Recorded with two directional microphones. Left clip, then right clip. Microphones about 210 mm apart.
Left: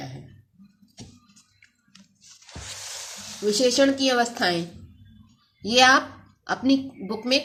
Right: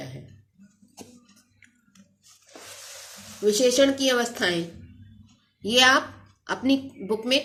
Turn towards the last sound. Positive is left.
turn(degrees=15)  # may be behind; listen again after turning